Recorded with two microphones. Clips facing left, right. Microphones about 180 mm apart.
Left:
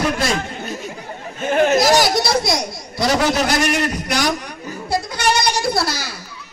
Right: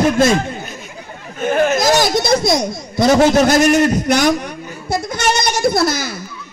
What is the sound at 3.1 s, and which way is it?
A man's voice, 50° right (ahead or behind).